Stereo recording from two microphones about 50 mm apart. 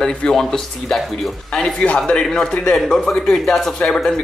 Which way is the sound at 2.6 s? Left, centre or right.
Centre.